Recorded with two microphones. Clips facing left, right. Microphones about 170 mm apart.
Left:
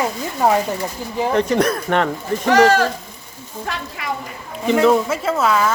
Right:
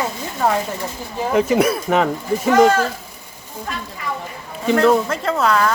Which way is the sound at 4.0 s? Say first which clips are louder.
Left 1 dB; 90° left.